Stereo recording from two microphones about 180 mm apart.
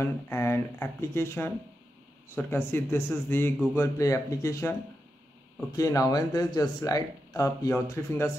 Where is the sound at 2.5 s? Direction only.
15° left (ahead or behind).